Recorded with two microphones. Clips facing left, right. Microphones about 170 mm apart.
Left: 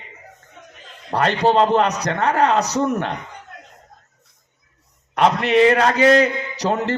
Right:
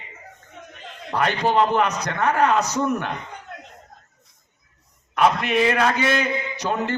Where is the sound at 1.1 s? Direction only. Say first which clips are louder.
Left 4 dB; 30° left (ahead or behind).